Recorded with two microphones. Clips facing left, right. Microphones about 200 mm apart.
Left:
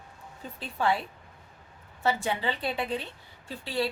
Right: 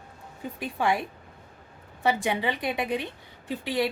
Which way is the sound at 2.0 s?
15° right (ahead or behind).